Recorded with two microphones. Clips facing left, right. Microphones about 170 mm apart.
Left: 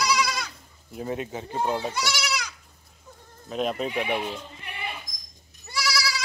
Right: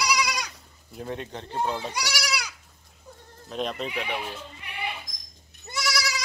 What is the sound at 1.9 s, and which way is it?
Goat, 15° right (ahead or behind).